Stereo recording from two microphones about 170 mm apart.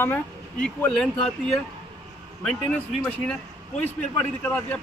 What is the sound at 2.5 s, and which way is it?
Speech, 5° left (ahead or behind).